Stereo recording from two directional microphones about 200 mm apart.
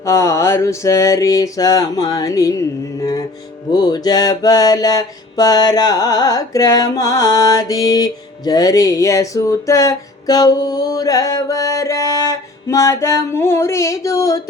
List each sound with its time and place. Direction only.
0.0 s mantra: 15° left (ahead or behind)